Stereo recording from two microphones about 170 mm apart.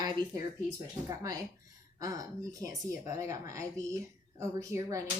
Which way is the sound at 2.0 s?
20° right (ahead or behind).